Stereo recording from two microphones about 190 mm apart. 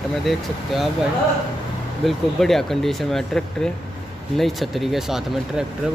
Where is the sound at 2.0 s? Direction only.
Centre (ahead or behind).